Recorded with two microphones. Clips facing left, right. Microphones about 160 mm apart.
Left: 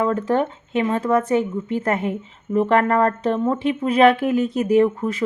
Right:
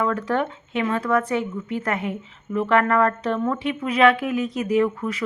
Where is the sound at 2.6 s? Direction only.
40° left (ahead or behind).